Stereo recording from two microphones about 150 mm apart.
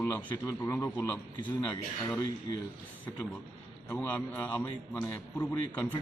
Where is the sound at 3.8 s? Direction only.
10° left (ahead or behind).